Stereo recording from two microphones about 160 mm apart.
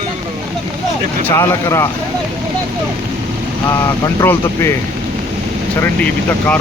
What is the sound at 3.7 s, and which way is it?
Speech, 20° left (ahead or behind).